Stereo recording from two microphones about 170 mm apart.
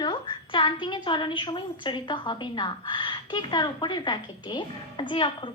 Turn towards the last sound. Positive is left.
turn(degrees=30)  # may be behind; listen again after turning